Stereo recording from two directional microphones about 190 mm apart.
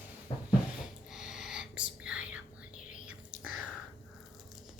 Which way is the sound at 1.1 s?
5° right (ahead or behind).